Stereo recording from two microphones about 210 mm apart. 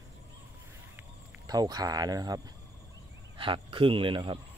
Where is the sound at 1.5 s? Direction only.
20° right (ahead or behind).